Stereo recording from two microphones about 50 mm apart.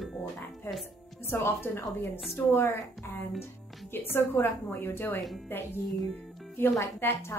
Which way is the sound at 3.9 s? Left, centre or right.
Left.